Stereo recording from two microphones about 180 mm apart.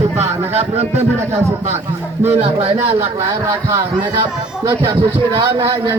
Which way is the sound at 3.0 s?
15° right (ahead or behind).